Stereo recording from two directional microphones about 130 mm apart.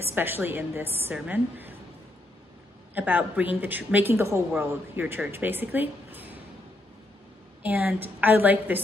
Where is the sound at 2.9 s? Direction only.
15° right (ahead or behind).